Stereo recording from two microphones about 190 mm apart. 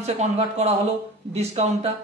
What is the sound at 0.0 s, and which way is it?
Speech, 35° right (ahead or behind).